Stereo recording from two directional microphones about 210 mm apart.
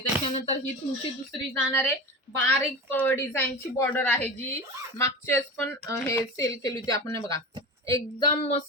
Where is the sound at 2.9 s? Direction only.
10° left (ahead or behind).